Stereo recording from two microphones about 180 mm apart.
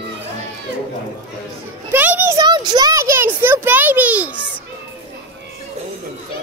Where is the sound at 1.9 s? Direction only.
10° right (ahead or behind).